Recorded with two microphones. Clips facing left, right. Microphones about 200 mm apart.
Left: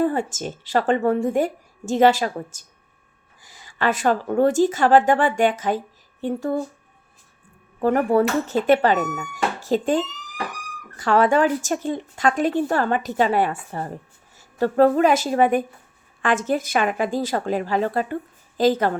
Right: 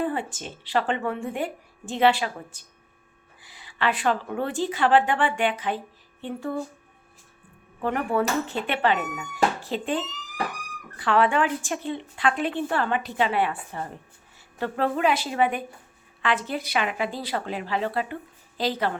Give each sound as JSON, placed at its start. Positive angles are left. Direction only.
{"t": 0.0, "sound": "speech", "side_deg": 45}
{"t": 7.8, "sound": "speech", "side_deg": 40}